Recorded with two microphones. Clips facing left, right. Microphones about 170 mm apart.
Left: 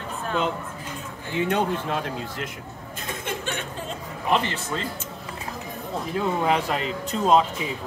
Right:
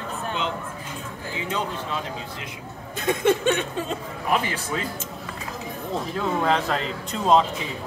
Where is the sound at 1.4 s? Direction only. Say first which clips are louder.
Left 6 dB; 60° left (ahead or behind).